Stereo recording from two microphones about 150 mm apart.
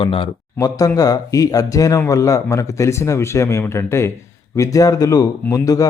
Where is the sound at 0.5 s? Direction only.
20° left (ahead or behind).